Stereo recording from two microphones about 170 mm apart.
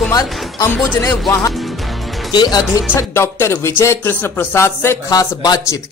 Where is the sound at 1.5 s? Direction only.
Centre (ahead or behind).